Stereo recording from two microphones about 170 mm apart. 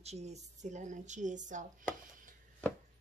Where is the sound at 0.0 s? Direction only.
40° right (ahead or behind).